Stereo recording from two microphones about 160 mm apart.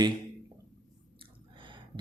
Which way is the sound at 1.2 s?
30° right (ahead or behind).